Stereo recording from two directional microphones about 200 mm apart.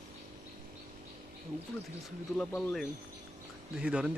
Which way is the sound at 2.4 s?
5° left (ahead or behind).